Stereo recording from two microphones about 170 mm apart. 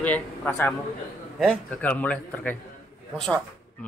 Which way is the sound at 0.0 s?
10° left (ahead or behind).